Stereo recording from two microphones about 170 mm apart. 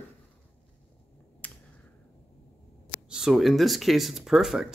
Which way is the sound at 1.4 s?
10° left (ahead or behind).